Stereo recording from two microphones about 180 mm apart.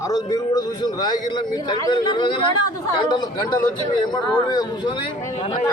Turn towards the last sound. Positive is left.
turn(degrees=30)  # may be behind; listen again after turning